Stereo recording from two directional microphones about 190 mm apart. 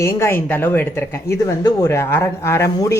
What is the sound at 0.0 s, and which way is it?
Speech, 15° left (ahead or behind).